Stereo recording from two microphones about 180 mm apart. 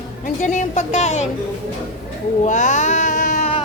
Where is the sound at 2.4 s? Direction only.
45° left (ahead or behind).